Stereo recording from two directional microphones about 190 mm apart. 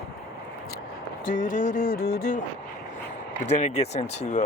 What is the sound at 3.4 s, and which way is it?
Speech, 35° left (ahead or behind).